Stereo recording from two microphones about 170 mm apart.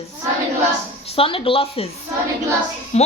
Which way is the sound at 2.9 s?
40° left (ahead or behind).